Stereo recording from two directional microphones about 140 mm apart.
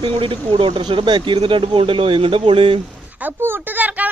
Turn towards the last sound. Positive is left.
turn(degrees=-10)  # may be behind; listen again after turning